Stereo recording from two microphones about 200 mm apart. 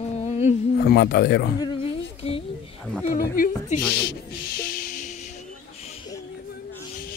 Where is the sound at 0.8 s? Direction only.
55° left (ahead or behind).